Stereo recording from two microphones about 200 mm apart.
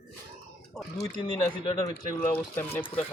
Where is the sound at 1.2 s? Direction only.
20° left (ahead or behind).